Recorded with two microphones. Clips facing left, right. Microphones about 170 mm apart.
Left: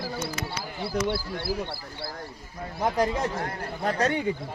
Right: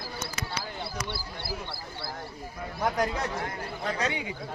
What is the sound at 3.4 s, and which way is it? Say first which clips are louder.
Speech: left 4 dB; 45° left (ahead or behind).